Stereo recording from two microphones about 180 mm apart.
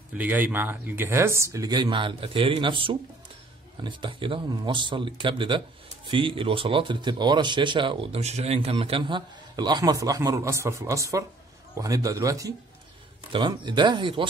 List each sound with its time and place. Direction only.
0.1 s speech: 10° right (ahead or behind); by 14.2 s 25° right (ahead or behind)